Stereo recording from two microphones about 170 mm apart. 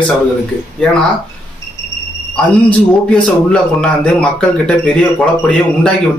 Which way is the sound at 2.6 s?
5° left (ahead or behind).